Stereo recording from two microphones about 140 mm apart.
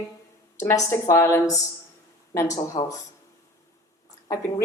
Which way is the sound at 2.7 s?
50° left (ahead or behind).